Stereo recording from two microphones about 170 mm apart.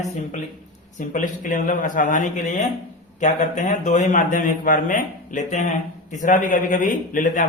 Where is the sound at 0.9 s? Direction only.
50° left (ahead or behind).